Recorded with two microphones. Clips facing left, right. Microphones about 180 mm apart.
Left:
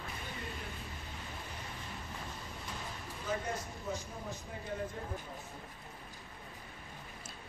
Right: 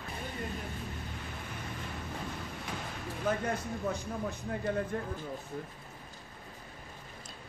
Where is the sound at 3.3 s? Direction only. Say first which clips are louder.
Right 5 dB; 60° right (ahead or behind).